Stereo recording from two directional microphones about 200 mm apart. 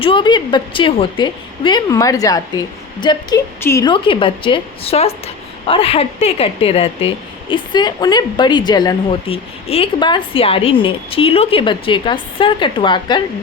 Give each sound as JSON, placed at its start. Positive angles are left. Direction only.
{"t": 0.0, "sound": "a woman's voice", "side_deg": 25}